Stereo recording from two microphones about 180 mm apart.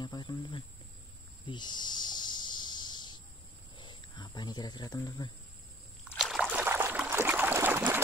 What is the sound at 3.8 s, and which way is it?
Speech, 25° left (ahead or behind).